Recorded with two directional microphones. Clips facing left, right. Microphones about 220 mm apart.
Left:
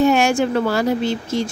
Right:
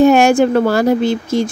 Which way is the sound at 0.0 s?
50° right (ahead or behind).